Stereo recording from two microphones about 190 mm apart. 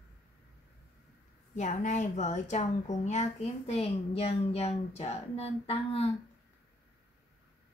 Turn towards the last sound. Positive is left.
turn(degrees=30)  # may be behind; listen again after turning